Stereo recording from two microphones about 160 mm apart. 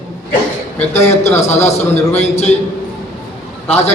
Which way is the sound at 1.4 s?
45° left (ahead or behind).